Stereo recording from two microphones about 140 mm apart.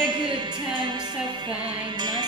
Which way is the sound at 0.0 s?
35° right (ahead or behind).